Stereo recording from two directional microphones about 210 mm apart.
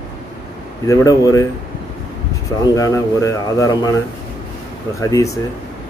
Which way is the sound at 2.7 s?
15° left (ahead or behind).